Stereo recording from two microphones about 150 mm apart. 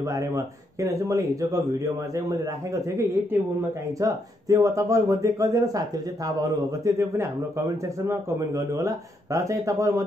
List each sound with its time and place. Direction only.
0.0 s speech: 20° right (ahead or behind)
2.7 s speech: 20° right (ahead or behind)